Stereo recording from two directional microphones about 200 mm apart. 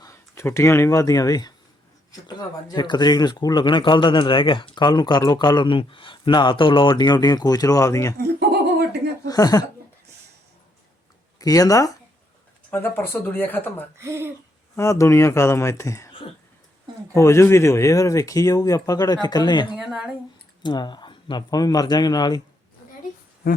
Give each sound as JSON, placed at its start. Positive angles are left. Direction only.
{"t": 0.0, "sound": "speech", "side_deg": 15}
{"t": 9.2, "sound": "speech", "side_deg": 20}
{"t": 11.3, "sound": "speech", "side_deg": 20}
{"t": 14.0, "sound": "speech", "side_deg": -10}
{"t": 14.8, "sound": "speech", "side_deg": 15}
{"t": 17.2, "sound": "speech", "side_deg": 15}
{"t": 19.7, "sound": "speech", "side_deg": -5}
{"t": 20.6, "sound": "speech", "side_deg": 20}
{"t": 23.4, "sound": "speech", "side_deg": 45}